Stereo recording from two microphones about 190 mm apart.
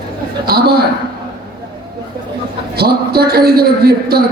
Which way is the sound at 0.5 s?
55° right (ahead or behind).